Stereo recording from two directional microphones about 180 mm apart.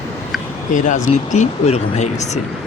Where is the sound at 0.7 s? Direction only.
45° left (ahead or behind).